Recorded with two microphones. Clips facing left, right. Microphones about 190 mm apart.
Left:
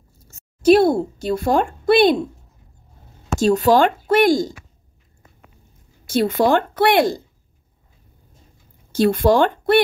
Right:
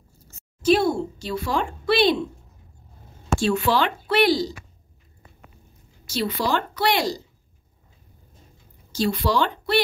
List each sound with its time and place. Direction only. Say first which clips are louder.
0.7 s a sound: left 6 dB; 60° left (ahead or behind)
1.2 s speech: left 8 dB; 50° left (ahead or behind)
3.3 s speech: left 7 dB; 40° left (ahead or behind)
6.0 s speech: left 8 dB; 50° left (ahead or behind)
8.9 s speech: left 7 dB; 55° left (ahead or behind)